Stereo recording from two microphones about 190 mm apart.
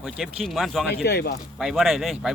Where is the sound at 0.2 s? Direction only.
Centre (ahead or behind).